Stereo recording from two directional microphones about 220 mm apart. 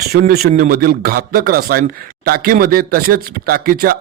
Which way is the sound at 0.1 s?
45° right (ahead or behind).